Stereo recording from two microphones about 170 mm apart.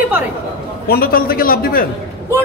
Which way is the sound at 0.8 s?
60° left (ahead or behind).